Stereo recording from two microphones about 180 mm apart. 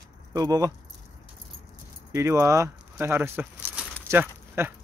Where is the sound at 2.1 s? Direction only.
15° right (ahead or behind).